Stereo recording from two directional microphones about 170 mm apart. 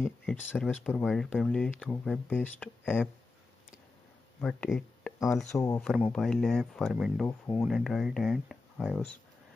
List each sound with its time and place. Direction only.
0.2 s speech: 5° left (ahead or behind)
4.4 s speech: 10° left (ahead or behind)